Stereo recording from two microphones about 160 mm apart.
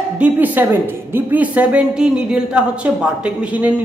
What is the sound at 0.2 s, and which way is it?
A woman's voice, 10° right (ahead or behind).